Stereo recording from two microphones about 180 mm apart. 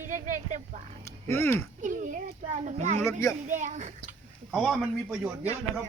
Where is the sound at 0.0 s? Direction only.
45° right (ahead or behind).